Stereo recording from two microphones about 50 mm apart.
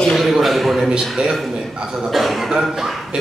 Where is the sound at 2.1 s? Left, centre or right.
Centre.